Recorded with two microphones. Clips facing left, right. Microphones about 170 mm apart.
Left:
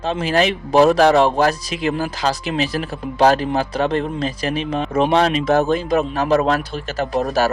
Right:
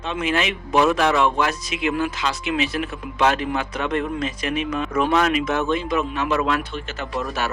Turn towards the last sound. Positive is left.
turn(degrees=40)  # may be behind; listen again after turning